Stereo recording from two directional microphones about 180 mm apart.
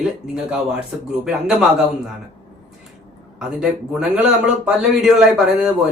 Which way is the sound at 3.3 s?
5° right (ahead or behind).